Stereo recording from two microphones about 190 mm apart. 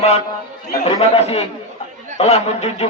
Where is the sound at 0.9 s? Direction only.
30° left (ahead or behind).